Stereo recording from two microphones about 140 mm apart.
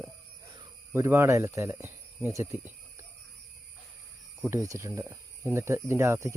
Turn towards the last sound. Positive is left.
turn(degrees=-20)  # may be behind; listen again after turning